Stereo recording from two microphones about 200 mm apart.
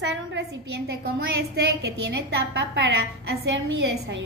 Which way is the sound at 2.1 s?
55° right (ahead or behind).